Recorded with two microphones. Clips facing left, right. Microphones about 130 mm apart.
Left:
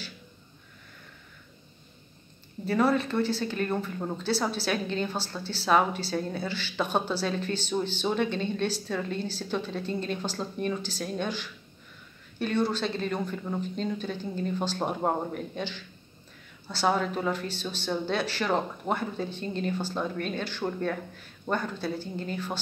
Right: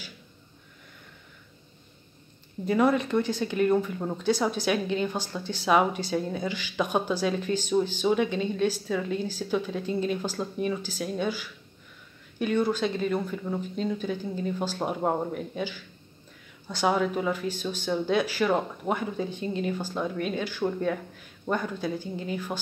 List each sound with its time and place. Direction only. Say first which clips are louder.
2.6 s a woman's voice: right 2 dB; 15° right (ahead or behind)